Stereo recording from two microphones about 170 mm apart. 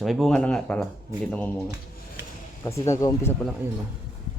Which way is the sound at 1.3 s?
10° left (ahead or behind).